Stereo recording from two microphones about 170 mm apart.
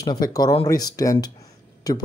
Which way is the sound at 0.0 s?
25° left (ahead or behind).